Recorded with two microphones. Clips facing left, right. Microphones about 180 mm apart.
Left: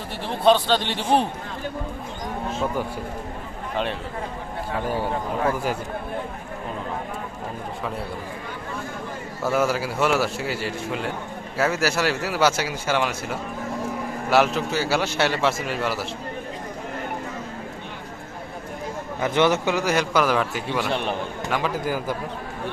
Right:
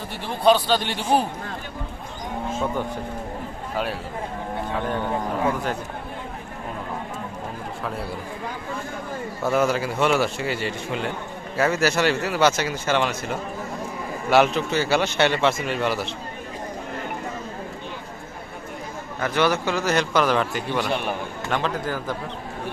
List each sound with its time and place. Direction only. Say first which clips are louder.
0.4 s a man's voice: even; 5° right (ahead or behind)
9.4 s a man's voice: right 1 dB; 5° left (ahead or behind)
19.2 s a man's voice: left 2 dB; 20° left (ahead or behind); by 20.9 s 5° left (ahead or behind)
20.9 s a man's voice: even; 10° right (ahead or behind)
21.5 s a man's voice: even; 10° left (ahead or behind)